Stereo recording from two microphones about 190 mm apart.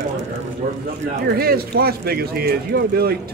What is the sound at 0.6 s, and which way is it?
Speech, 40° right (ahead or behind).